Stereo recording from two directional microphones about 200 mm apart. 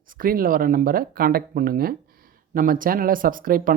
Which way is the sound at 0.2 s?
45° right (ahead or behind).